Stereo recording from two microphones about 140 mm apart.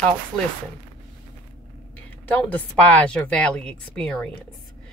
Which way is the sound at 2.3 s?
10° left (ahead or behind).